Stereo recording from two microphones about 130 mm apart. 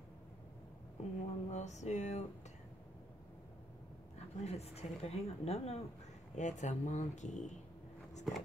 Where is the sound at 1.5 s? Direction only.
65° left (ahead or behind).